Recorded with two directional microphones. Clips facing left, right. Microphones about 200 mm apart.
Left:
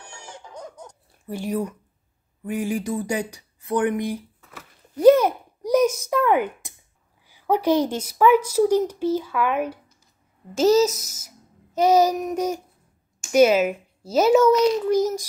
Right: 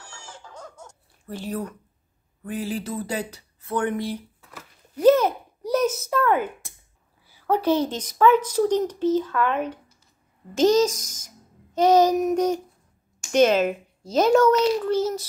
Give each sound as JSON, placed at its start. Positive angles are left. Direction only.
{"t": 0.0, "sound": "chicken", "side_deg": 20}
{"t": 1.2, "sound": "a woman's voice", "side_deg": 10}
{"t": 4.9, "sound": "a sound", "side_deg": 10}
{"t": 7.2, "sound": "a woman's voice", "side_deg": 15}